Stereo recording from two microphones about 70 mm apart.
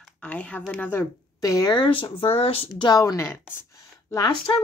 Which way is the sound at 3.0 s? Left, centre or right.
Left.